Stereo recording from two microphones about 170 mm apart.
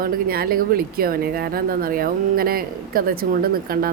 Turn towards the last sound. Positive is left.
turn(degrees=-60)  # may be behind; listen again after turning